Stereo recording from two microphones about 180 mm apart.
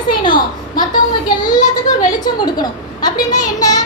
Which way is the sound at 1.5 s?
45° left (ahead or behind).